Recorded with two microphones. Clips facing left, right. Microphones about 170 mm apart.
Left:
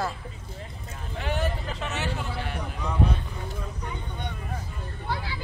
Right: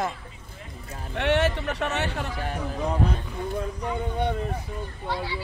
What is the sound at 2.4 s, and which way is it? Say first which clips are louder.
Speech: right 4 dB; 40° right (ahead or behind).